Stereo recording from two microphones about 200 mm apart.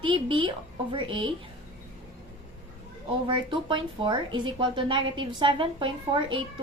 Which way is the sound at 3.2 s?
25° right (ahead or behind).